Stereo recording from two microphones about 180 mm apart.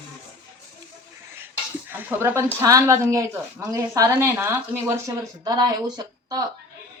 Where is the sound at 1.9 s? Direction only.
10° right (ahead or behind).